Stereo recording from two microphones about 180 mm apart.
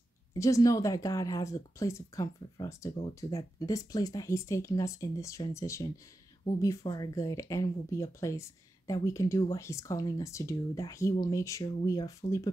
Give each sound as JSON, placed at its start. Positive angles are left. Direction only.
{"t": 0.3, "sound": "speech", "side_deg": 20}